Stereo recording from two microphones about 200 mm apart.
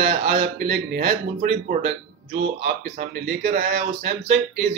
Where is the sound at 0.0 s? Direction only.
55° right (ahead or behind).